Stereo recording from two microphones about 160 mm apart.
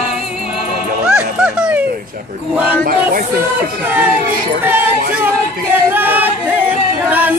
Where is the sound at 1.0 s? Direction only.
5° right (ahead or behind).